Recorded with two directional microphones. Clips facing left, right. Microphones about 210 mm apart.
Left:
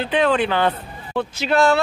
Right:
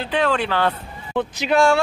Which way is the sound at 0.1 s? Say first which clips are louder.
Left 2 dB; centre (ahead or behind).